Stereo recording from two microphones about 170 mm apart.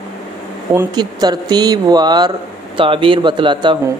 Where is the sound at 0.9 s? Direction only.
25° right (ahead or behind).